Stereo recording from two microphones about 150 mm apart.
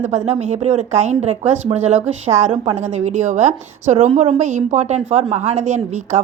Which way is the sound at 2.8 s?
50° right (ahead or behind).